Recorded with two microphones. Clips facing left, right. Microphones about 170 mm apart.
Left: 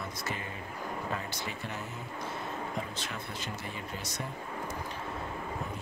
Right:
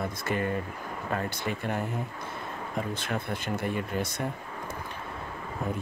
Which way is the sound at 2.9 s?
55° right (ahead or behind).